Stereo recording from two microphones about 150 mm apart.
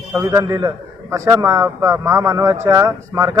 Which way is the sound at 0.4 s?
25° right (ahead or behind).